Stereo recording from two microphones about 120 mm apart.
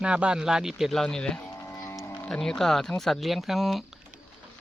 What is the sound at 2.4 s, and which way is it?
Speech, 5° left (ahead or behind).